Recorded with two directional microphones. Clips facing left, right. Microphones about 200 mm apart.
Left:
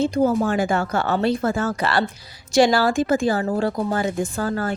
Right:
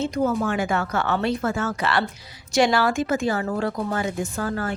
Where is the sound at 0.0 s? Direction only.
30° left (ahead or behind).